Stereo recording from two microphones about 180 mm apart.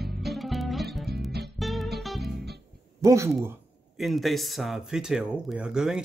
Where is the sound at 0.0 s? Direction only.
Centre (ahead or behind).